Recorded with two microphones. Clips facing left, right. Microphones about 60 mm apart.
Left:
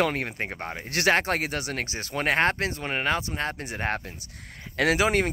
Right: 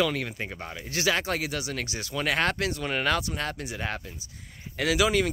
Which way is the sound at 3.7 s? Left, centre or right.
Left.